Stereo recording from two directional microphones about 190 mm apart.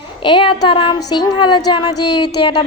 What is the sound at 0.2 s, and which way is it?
A woman's voice, 25° left (ahead or behind).